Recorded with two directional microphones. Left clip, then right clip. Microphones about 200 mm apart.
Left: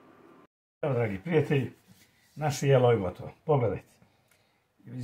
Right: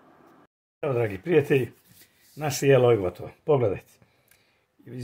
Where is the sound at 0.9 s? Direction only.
50° right (ahead or behind).